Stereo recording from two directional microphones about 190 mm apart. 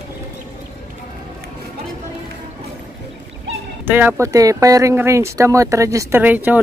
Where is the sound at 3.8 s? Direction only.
10° right (ahead or behind).